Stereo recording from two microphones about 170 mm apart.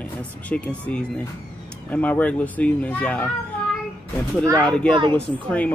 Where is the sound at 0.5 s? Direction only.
5° left (ahead or behind).